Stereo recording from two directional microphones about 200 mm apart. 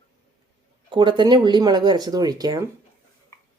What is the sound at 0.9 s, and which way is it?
Speech, 25° right (ahead or behind).